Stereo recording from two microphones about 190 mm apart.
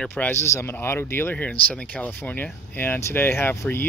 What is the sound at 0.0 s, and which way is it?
Speech, 10° left (ahead or behind).